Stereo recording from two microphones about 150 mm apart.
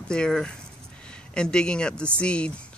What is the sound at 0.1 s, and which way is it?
Speech, 5° left (ahead or behind).